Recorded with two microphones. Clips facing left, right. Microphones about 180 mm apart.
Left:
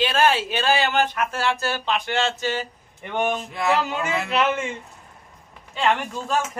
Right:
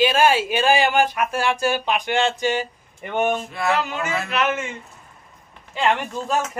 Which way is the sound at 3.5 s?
20° left (ahead or behind).